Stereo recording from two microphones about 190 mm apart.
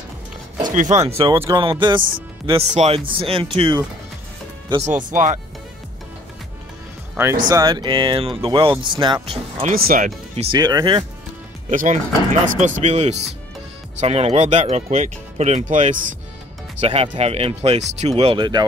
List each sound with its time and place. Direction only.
0.7 s speech: 40° right (ahead or behind)
1.0 s speech: 30° right (ahead or behind)
1.3 s speech: 20° right (ahead or behind)
4.8 s speech: 40° right (ahead or behind)
7.4 s speech: 20° right (ahead or behind)
9.8 s speech: 50° right (ahead or behind)
10.3 s speech: 30° right (ahead or behind)
11.7 s speech: 45° right (ahead or behind); by 18.7 s 25° right (ahead or behind)